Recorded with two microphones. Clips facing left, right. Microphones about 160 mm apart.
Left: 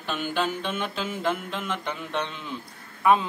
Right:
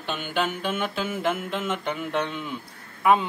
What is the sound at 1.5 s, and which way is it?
Music, 5° right (ahead or behind).